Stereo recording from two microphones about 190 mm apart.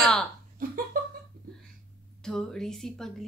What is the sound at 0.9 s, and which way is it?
Laughter, 45° right (ahead or behind).